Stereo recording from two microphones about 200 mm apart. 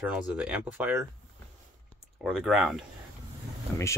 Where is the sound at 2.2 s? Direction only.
5° right (ahead or behind).